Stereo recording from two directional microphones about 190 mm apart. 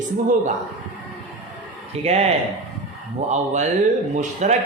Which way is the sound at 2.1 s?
35° right (ahead or behind).